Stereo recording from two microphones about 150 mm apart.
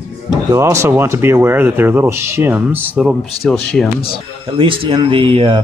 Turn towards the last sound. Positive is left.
turn(degrees=-35)  # may be behind; listen again after turning